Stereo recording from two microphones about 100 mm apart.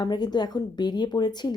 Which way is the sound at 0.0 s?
45° left (ahead or behind).